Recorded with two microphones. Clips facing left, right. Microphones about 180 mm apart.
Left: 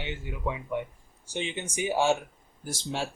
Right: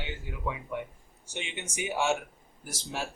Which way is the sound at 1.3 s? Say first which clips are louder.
Left 5 dB; 30° left (ahead or behind).